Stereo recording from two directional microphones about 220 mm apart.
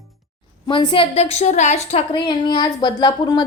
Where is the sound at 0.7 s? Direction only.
20° left (ahead or behind).